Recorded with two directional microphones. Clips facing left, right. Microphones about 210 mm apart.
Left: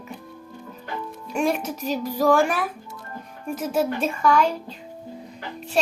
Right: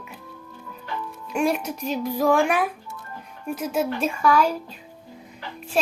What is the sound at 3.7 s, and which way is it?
Speech, centre (ahead or behind).